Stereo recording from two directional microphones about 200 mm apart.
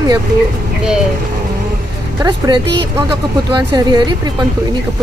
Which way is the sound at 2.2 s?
20° right (ahead or behind).